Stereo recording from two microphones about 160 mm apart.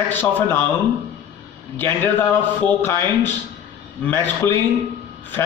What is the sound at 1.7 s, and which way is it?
Speech, 10° left (ahead or behind).